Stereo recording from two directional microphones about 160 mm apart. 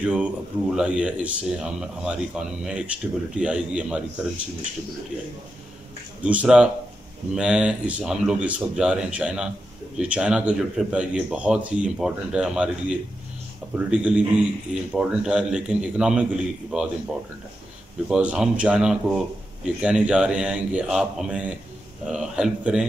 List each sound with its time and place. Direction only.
0.0 s speech: 5° right (ahead or behind)
6.2 s a man's voice: 5° right (ahead or behind)
18.0 s a man's voice: 5° right (ahead or behind)